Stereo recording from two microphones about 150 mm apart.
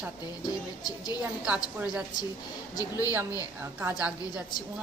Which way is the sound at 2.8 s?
20° left (ahead or behind).